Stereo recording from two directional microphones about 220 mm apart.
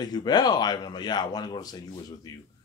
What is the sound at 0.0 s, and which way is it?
Speech, 20° left (ahead or behind).